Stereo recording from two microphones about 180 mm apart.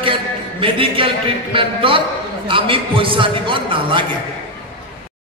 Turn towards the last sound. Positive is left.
turn(degrees=-30)  # may be behind; listen again after turning